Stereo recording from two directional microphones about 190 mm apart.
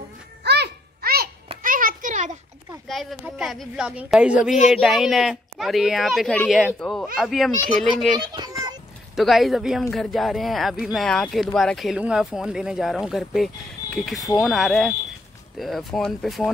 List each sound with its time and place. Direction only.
0.4 s babbling: 60° right (ahead or behind)
1.6 s children playing: 45° right (ahead or behind)
2.9 s a sound: centre (ahead or behind)
3.3 s speech: centre (ahead or behind)
8.4 s children playing: 20° right (ahead or behind)
9.1 s speech: centre (ahead or behind)